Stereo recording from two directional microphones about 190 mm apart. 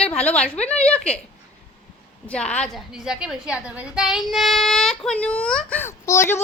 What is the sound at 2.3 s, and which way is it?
A woman's voice, 5° left (ahead or behind).